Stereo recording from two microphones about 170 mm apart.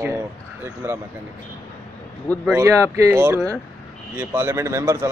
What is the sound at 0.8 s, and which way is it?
Speech, 15° right (ahead or behind).